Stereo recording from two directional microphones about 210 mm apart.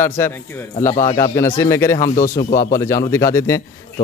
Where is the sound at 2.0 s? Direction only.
35° left (ahead or behind).